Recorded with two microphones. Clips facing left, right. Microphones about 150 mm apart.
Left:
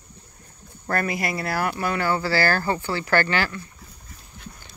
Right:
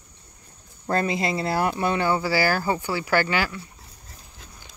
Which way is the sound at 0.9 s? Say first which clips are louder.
Right 2 dB; 20° right (ahead or behind).